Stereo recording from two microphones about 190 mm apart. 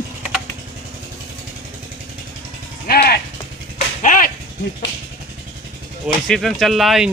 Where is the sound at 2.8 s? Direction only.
55° left (ahead or behind).